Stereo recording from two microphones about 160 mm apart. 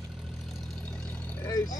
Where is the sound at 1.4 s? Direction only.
20° left (ahead or behind).